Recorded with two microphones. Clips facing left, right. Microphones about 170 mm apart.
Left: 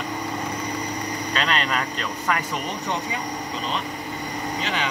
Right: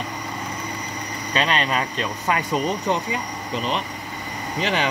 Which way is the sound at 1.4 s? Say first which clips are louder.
Right 3 dB; 20° right (ahead or behind).